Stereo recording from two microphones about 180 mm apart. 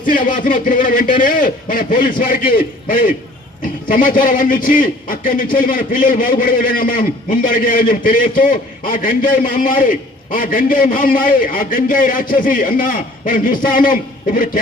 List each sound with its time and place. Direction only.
0.0 s a man's voice: 50° left (ahead or behind)